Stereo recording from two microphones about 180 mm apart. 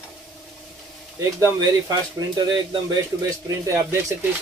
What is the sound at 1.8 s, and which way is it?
Speech, 20° right (ahead or behind).